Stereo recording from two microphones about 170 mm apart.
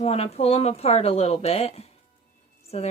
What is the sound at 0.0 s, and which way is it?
A woman's voice, 35° left (ahead or behind).